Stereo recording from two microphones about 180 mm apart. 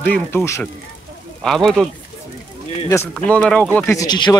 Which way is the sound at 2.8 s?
15° left (ahead or behind).